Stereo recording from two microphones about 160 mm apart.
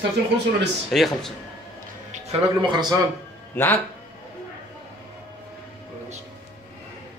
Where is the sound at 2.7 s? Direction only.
25° right (ahead or behind).